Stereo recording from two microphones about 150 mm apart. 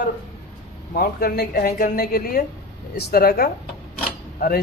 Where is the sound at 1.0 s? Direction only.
85° left.